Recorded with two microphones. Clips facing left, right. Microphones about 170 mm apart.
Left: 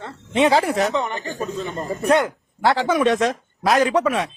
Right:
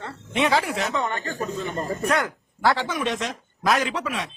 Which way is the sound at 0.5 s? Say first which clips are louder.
Left 5 dB; 40° left (ahead or behind).